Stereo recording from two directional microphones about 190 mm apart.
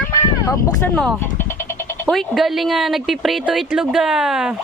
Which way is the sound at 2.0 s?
Centre (ahead or behind).